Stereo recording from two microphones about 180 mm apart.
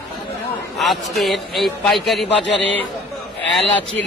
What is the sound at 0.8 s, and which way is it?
A man's voice, centre (ahead or behind).